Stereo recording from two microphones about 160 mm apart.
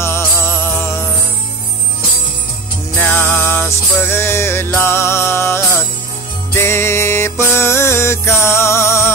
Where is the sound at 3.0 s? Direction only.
15° left (ahead or behind).